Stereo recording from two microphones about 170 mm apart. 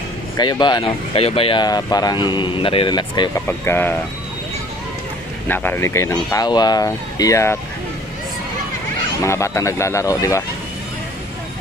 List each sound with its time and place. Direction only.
0.4 s speech: 25° left (ahead or behind)
3.4 s speech: 10° left (ahead or behind)
5.5 s speech: 10° left (ahead or behind)
9.2 s speech: 15° left (ahead or behind)